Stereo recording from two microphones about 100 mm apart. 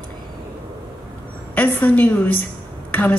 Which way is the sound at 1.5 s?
15° left (ahead or behind).